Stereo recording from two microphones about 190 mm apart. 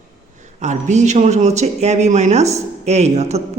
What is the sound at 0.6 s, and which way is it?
Speech, 40° right (ahead or behind).